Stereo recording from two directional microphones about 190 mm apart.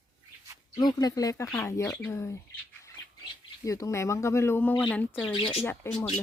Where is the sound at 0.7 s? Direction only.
20° left (ahead or behind).